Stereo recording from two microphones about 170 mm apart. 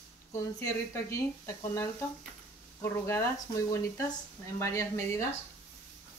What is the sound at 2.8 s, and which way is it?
Speech, 15° left (ahead or behind).